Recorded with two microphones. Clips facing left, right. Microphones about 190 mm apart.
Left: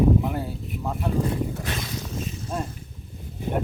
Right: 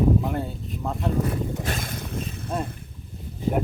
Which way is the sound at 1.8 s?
55° right (ahead or behind).